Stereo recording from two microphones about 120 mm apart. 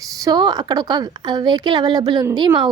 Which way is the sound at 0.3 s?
35° right (ahead or behind).